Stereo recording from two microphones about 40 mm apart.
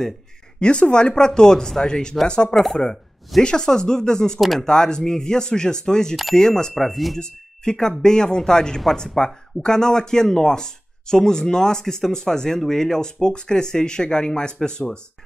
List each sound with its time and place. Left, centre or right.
0.6 s speech: left
2.5 s speech: centre
3.4 s speech: centre
6.7 s speech: centre
7.2 s speech: centre